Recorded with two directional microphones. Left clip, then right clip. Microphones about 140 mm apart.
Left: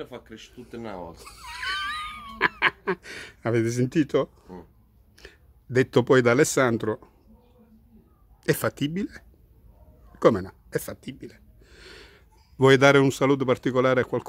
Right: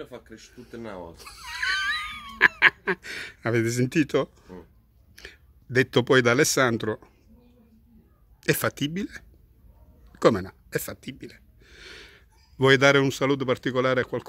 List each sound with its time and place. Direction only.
0.3 s speech: 25° left (ahead or behind)
1.1 s a sound: 5° left (ahead or behind)
5.1 s speech: centre (ahead or behind)
8.4 s speech: centre (ahead or behind)
10.1 s gasp: centre (ahead or behind)
12.5 s speech: 15° left (ahead or behind)